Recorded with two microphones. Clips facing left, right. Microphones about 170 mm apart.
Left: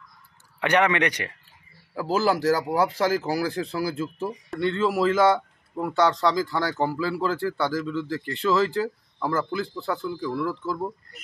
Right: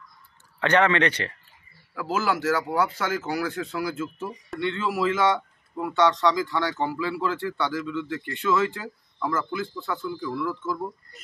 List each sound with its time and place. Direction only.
0.6 s speech: 15° left (ahead or behind)
2.0 s speech: 35° left (ahead or behind)